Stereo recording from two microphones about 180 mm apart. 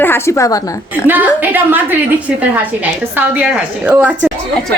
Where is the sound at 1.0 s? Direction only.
10° right (ahead or behind).